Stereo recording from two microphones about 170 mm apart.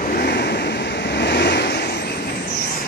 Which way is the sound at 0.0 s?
65° left (ahead or behind).